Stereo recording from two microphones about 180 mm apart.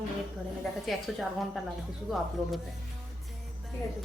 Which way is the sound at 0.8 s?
Centre (ahead or behind).